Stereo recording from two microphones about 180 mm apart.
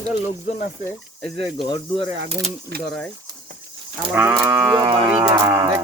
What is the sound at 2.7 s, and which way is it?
Speech, 60° right (ahead or behind).